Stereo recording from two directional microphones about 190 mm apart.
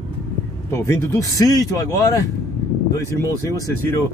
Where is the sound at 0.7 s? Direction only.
15° left (ahead or behind).